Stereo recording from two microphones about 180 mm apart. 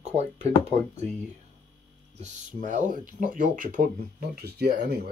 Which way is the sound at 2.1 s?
45° right (ahead or behind).